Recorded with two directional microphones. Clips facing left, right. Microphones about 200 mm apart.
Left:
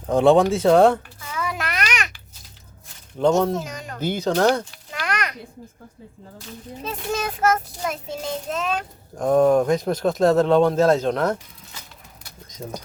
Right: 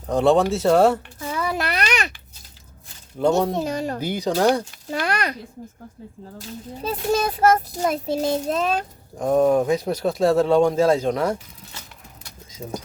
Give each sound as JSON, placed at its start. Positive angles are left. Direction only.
{"t": 0.1, "sound": "speech", "side_deg": 0}
{"t": 1.2, "sound": "a sound", "side_deg": -35}
{"t": 3.2, "sound": "speech", "side_deg": 0}
{"t": 3.5, "sound": "child singing", "side_deg": -35}
{"t": 4.0, "sound": "speech", "side_deg": -10}
{"t": 4.9, "sound": "a sound", "side_deg": -35}
{"t": 6.8, "sound": "child singing", "side_deg": -35}
{"t": 9.1, "sound": "speech", "side_deg": -10}